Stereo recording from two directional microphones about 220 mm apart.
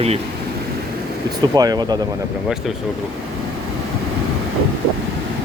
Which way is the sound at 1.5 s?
20° right (ahead or behind).